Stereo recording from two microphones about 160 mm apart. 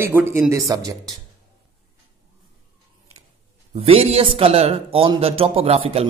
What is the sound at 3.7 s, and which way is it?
A man's voice, 40° right (ahead or behind).